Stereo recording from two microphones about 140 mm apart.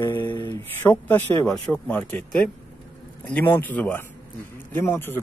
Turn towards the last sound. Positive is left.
turn(degrees=15)  # may be behind; listen again after turning